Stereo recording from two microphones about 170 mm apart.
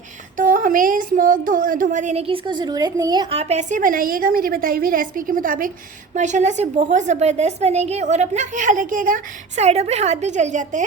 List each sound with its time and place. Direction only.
0.3 s a woman's voice: 50° right (ahead or behind)
2.2 s a woman's voice: 30° right (ahead or behind); by 10.8 s 45° right (ahead or behind)